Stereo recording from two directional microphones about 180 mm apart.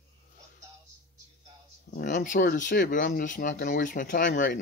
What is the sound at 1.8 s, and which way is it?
Speech, 50° left (ahead or behind).